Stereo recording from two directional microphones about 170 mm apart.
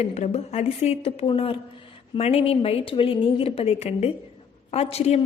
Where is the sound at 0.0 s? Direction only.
40° left (ahead or behind).